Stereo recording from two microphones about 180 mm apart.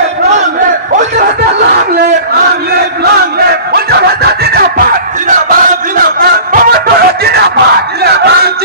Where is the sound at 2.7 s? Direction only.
60° right (ahead or behind).